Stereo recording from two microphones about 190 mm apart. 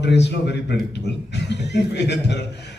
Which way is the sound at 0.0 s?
65° left (ahead or behind).